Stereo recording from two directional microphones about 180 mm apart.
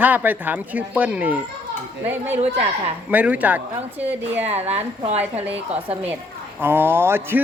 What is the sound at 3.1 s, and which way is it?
Speech, 10° right (ahead or behind).